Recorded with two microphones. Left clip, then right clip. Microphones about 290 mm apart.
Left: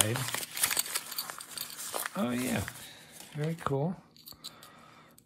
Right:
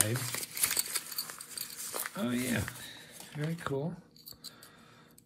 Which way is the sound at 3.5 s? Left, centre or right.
Centre.